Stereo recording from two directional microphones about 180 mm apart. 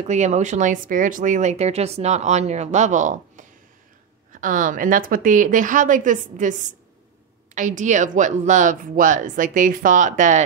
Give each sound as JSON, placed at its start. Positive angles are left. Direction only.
{"t": 0.1, "sound": "speech", "side_deg": -40}
{"t": 7.5, "sound": "speech", "side_deg": -45}